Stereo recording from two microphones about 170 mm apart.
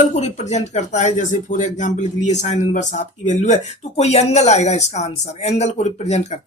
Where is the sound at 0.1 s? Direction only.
40° left (ahead or behind).